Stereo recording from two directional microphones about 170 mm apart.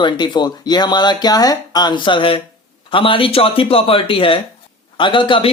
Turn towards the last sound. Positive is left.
turn(degrees=30)  # may be behind; listen again after turning